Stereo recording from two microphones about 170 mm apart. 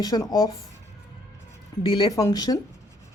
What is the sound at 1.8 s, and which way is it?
Speech, 30° left (ahead or behind).